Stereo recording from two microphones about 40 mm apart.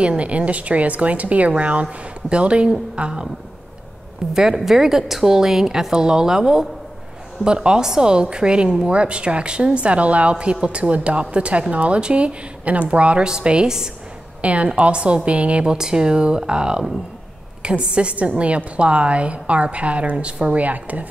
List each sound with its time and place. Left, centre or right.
0.0 s a woman's voice: right
4.3 s a woman's voice: centre; by 13.2 s right
13.2 s a woman's voice: right
14.4 s a woman's voice: right
15.7 s a woman's voice: centre
20.5 s a woman's voice: right